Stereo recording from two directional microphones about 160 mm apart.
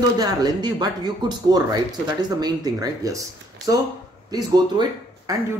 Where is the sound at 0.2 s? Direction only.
25° right (ahead or behind).